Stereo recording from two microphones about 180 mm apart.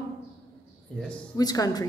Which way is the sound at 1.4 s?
20° left (ahead or behind).